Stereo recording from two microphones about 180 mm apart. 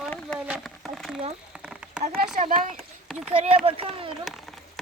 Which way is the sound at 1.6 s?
5° right (ahead or behind).